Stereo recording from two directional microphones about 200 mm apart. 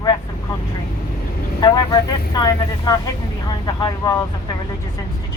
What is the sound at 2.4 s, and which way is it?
Speech, 20° left (ahead or behind).